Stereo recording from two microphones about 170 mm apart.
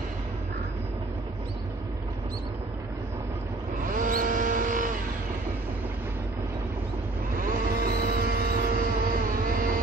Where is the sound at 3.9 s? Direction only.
50° right (ahead or behind).